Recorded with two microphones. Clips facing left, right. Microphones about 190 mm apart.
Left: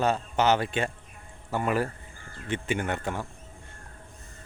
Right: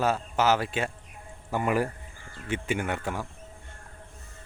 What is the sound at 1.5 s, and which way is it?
Speech, 15° right (ahead or behind).